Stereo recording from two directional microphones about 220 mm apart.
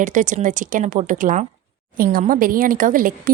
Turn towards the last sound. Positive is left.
turn(degrees=-40)  # may be behind; listen again after turning